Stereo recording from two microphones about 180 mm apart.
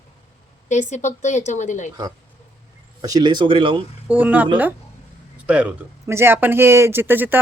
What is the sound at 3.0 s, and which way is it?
Speech, 20° right (ahead or behind).